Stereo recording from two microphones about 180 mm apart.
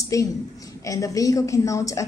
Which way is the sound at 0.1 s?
20° left (ahead or behind).